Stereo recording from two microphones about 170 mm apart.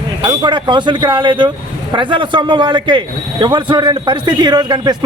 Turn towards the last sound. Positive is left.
turn(degrees=-25)  # may be behind; listen again after turning